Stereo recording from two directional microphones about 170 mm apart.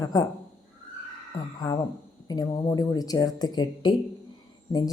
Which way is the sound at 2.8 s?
20° left (ahead or behind).